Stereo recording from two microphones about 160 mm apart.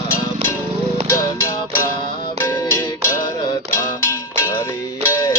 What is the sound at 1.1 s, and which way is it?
Music, 15° left (ahead or behind).